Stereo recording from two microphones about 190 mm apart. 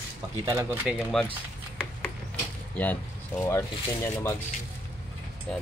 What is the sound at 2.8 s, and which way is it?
Speech, 10° left (ahead or behind).